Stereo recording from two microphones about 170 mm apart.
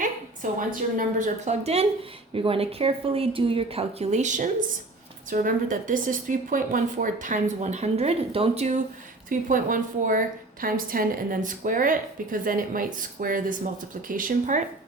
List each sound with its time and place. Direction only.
0.7 s a woman's voice: 50° right (ahead or behind)
9.5 s a woman's voice: 50° right (ahead or behind)